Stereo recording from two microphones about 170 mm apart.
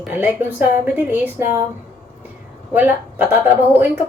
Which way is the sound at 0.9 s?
10° right (ahead or behind).